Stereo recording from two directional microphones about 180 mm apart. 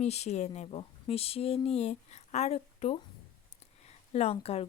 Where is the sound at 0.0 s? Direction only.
35° left (ahead or behind).